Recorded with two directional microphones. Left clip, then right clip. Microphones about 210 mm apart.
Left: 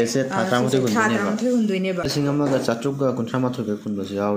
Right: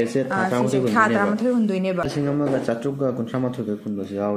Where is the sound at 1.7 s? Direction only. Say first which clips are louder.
Even; 25° right (ahead or behind).